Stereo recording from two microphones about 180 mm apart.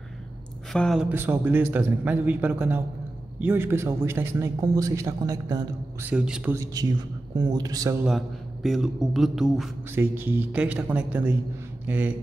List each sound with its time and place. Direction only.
0.7 s speech: centre (ahead or behind)
1.0 s a man's voice: 10° right (ahead or behind)
8.6 s a man's voice: centre (ahead or behind)